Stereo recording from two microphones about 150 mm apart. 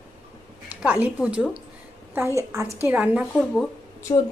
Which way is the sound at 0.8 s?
10° right (ahead or behind).